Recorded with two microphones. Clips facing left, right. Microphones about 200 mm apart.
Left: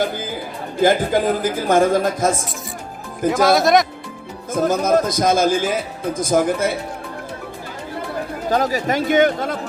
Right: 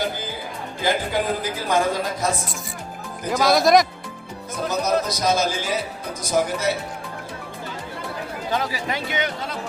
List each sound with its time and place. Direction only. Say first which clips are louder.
0.8 s a woman's voice: left 7 dB; 50° left (ahead or behind)
3.2 s speech: left 3 dB; centre (ahead or behind)
4.5 s a woman's voice: left 6 dB; 50° left (ahead or behind)
8.4 s a woman's voice: left 7 dB; 45° left (ahead or behind)